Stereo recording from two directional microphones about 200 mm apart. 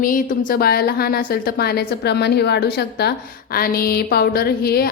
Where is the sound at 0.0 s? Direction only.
40° left (ahead or behind).